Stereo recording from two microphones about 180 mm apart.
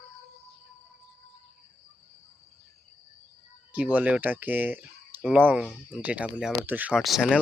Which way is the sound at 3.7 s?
10° right (ahead or behind).